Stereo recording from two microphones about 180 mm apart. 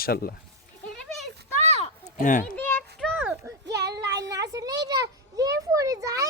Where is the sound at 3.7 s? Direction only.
70° right (ahead or behind).